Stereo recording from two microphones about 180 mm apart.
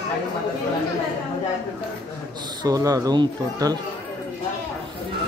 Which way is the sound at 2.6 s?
20° right (ahead or behind).